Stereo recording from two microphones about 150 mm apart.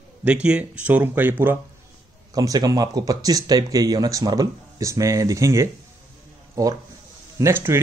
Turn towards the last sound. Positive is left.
turn(degrees=-15)  # may be behind; listen again after turning